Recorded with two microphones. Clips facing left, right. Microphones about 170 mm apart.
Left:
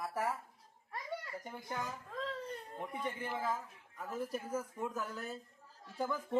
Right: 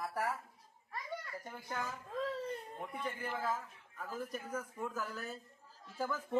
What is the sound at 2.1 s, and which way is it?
Baby cry, 10° right (ahead or behind).